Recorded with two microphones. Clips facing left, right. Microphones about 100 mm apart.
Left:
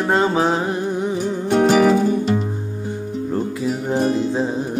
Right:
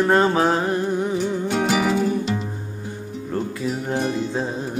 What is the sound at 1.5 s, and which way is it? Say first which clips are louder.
Music: left 8 dB; 40° left (ahead or behind).